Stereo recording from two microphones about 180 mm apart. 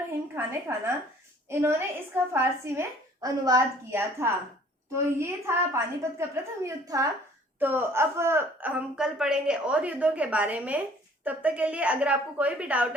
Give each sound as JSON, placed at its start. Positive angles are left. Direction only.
{"t": 0.3, "sound": "a woman's voice", "side_deg": -15}